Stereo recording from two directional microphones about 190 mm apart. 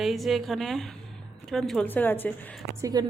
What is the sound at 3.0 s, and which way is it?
Speech, 20° right (ahead or behind).